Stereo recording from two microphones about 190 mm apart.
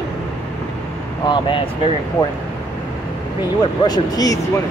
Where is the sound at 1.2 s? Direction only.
25° left (ahead or behind).